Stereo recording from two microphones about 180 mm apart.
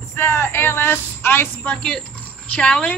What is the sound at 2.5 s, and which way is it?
Speech, 5° left (ahead or behind).